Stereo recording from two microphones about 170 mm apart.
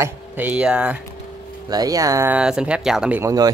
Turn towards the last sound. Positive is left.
turn(degrees=-20)  # may be behind; listen again after turning